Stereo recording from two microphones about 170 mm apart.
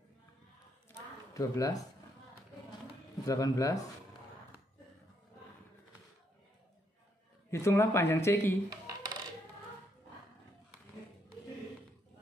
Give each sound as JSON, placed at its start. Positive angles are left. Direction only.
{"t": 1.3, "sound": "speech", "side_deg": 20}
{"t": 3.3, "sound": "speech", "side_deg": 20}
{"t": 7.5, "sound": "speech", "side_deg": 15}
{"t": 8.6, "sound": "coin", "side_deg": -20}